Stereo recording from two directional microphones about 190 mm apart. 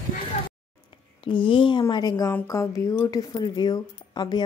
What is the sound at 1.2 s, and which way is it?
A woman's voice, 25° left (ahead or behind).